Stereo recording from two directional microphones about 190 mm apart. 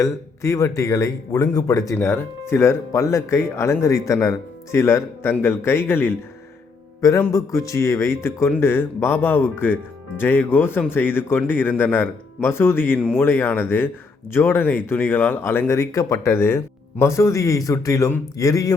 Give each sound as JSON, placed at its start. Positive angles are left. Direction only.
{"t": 0.0, "sound": "speech", "side_deg": 15}